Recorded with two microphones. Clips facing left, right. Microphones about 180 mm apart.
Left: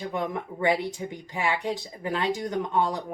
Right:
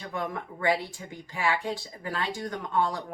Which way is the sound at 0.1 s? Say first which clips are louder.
Left 3 dB; 20° left (ahead or behind).